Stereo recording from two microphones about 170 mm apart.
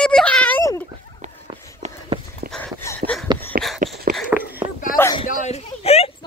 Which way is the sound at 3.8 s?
50° right (ahead or behind).